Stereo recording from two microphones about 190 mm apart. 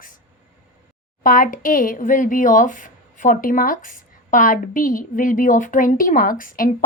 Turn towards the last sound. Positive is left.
turn(degrees=45)  # may be behind; listen again after turning